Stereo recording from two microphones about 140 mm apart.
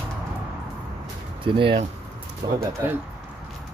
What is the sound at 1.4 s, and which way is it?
Speech, 40° right (ahead or behind).